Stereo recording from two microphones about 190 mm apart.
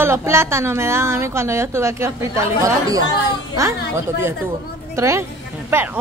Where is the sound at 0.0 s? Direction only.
15° right (ahead or behind).